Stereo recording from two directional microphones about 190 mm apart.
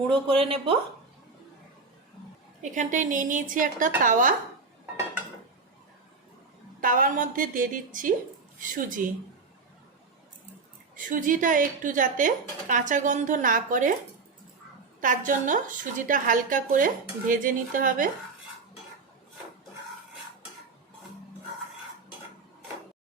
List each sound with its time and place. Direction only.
0.1 s speech: 30° right (ahead or behind)
2.6 s a woman's voice: 40° right (ahead or behind)
6.8 s a woman's voice: 45° right (ahead or behind)
10.9 s a woman's voice: 45° right (ahead or behind)
15.0 s a woman's voice: 45° right (ahead or behind)